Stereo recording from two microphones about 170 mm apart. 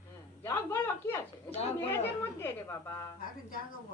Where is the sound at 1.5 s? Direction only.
40° left (ahead or behind).